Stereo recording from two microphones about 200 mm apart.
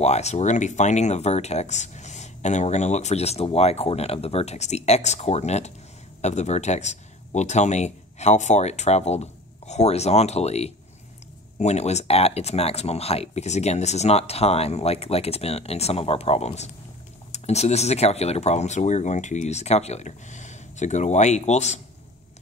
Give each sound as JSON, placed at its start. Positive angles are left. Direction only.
{"t": 0.0, "sound": "speech", "side_deg": 35}